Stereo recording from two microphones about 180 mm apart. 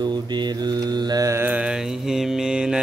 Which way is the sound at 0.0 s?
25° right (ahead or behind).